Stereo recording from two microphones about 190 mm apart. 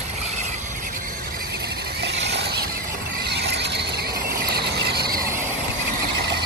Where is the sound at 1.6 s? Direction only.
60° right (ahead or behind).